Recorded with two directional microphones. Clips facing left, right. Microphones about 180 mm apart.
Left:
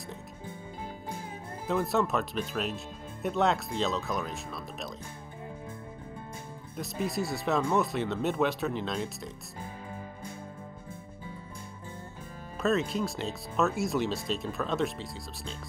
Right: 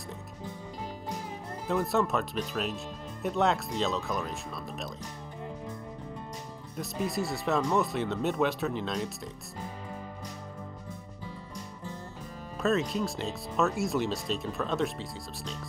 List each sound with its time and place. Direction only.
1.7 s speech: centre (ahead or behind)
6.8 s speech: centre (ahead or behind)
12.6 s speech: centre (ahead or behind)